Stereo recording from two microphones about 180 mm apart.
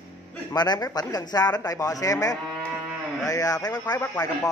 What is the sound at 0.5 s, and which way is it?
Speech, 20° left (ahead or behind).